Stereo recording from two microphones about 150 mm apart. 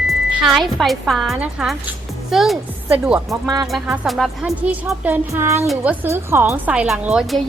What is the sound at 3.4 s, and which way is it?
Speech, 25° right (ahead or behind).